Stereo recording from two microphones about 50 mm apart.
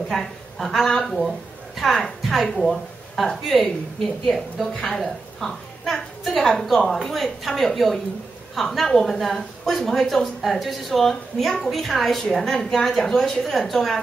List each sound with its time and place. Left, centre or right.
0.1 s a woman's voice: centre